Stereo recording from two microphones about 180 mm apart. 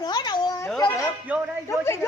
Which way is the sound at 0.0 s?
25° left (ahead or behind).